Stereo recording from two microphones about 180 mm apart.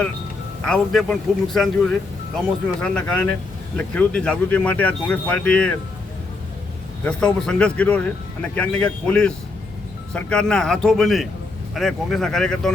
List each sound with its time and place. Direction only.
0.6 s speech: 5° left (ahead or behind)
7.0 s speech: 5° left (ahead or behind)